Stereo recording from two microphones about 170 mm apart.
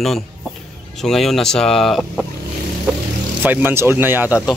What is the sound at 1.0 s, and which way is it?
Speech, centre (ahead or behind).